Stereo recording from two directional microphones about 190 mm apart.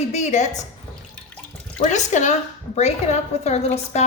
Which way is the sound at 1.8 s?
40° left (ahead or behind).